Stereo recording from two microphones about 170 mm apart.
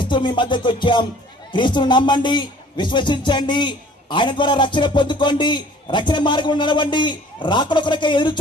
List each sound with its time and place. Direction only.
0.1 s a man's voice: 30° left (ahead or behind)